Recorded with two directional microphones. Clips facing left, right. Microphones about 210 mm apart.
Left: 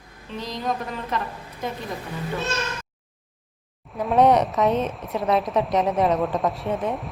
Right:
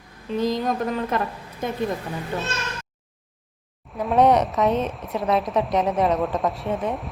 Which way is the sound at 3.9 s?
Centre (ahead or behind).